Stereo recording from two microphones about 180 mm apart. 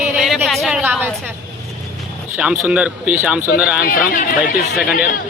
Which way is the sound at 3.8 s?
50° left (ahead or behind).